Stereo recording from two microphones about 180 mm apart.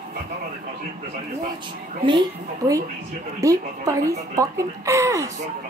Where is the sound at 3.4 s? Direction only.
20° right (ahead or behind).